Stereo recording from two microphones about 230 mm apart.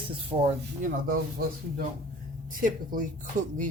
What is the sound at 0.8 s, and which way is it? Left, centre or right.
Speech, right.